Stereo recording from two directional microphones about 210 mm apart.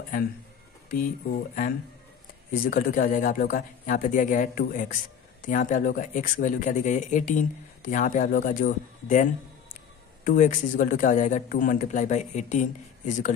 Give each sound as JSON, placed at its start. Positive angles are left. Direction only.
{"t": 0.8, "sound": "speech", "side_deg": 40}